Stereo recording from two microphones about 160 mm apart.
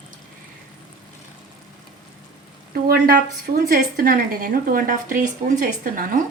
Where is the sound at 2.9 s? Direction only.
80° right.